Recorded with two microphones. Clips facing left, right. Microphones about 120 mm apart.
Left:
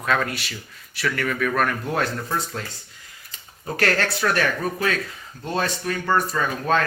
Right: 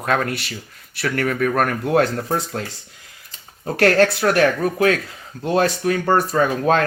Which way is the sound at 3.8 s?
60° right (ahead or behind).